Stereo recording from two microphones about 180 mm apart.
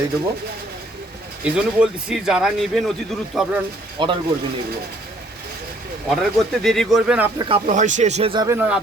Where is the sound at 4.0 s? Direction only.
25° right (ahead or behind).